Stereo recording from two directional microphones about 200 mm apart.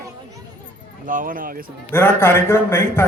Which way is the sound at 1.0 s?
40° right (ahead or behind).